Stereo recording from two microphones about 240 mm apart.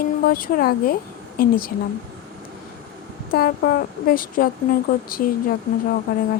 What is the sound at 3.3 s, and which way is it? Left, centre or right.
Speech, left.